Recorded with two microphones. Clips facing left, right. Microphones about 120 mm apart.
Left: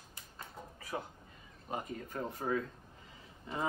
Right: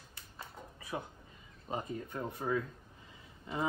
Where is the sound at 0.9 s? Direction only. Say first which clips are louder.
Even; 10° right (ahead or behind).